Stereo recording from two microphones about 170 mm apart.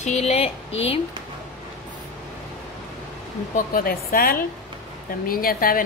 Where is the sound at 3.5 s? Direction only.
60° left (ahead or behind).